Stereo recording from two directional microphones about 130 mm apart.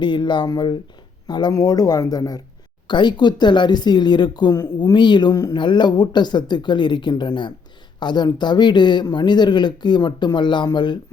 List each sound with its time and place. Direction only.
0.0 s speech: 35° left (ahead or behind)